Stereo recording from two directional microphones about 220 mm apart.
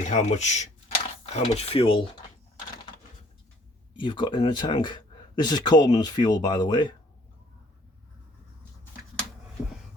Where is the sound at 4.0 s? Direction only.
20° left (ahead or behind).